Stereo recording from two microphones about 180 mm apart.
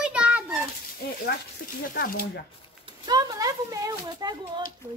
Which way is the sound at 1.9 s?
55° left (ahead or behind).